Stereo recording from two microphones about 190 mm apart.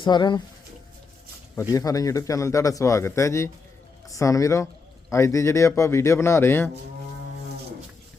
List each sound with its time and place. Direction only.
0.0 s speech: 25° left (ahead or behind)
1.7 s speech: 20° left (ahead or behind)